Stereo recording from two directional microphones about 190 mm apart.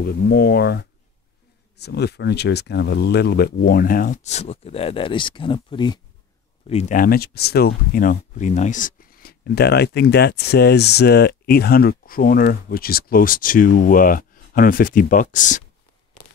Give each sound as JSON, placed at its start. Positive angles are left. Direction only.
{"t": 0.0, "sound": "speech", "side_deg": 55}
{"t": 6.7, "sound": "speech", "side_deg": 40}